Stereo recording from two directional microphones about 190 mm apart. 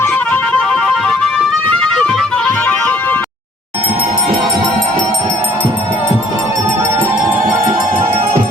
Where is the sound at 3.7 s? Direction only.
30° right (ahead or behind).